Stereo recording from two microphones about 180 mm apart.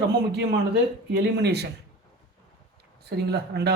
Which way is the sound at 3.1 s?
65° right (ahead or behind).